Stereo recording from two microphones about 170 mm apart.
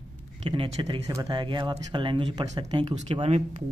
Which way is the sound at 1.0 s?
20° right (ahead or behind).